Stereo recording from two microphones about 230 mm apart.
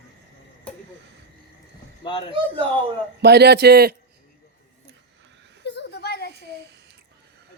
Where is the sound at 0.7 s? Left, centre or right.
Centre.